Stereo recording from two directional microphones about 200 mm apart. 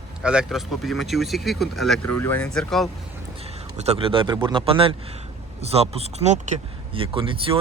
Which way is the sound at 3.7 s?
30° right (ahead or behind).